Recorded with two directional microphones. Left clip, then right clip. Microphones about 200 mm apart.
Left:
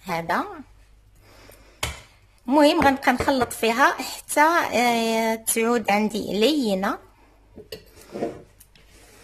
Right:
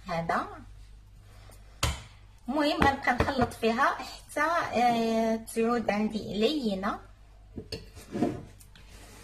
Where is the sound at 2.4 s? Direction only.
60° left (ahead or behind).